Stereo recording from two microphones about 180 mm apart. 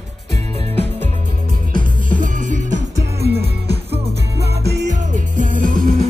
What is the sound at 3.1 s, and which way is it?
Music, 65° right (ahead or behind).